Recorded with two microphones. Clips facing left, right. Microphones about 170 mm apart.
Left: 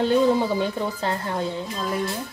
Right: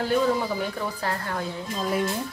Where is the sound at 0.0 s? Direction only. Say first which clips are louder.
Left 4 dB; 25° left (ahead or behind).